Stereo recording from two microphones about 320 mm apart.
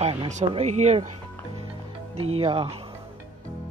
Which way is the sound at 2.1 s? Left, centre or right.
Right.